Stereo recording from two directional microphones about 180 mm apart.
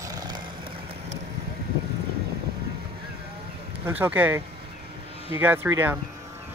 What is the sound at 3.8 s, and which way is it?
Speech, 10° right (ahead or behind).